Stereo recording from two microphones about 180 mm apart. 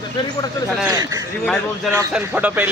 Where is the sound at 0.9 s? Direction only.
20° right (ahead or behind).